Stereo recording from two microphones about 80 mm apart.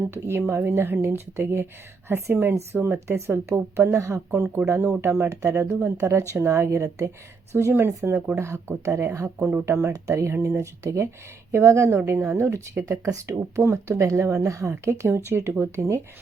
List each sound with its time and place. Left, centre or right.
0.1 s a woman's voice: right